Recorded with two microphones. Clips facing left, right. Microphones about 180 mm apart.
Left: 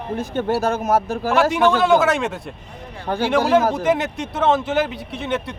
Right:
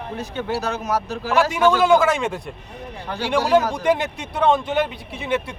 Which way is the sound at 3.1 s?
50° left (ahead or behind).